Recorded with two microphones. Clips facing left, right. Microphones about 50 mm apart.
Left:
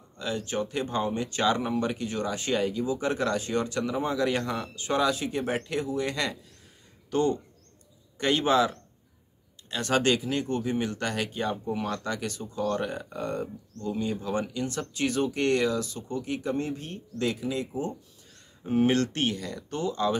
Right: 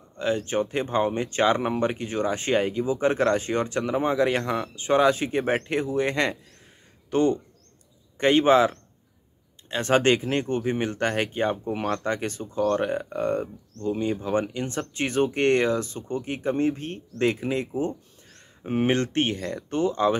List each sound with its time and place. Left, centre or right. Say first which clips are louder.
0.2 s a man's voice: right 6 dB; right